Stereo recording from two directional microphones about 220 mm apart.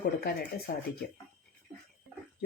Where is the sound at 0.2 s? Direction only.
45° left (ahead or behind).